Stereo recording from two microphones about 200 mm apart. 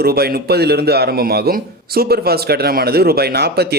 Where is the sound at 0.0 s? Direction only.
50° right (ahead or behind).